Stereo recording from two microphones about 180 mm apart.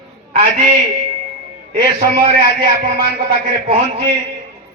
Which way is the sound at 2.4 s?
55° right (ahead or behind).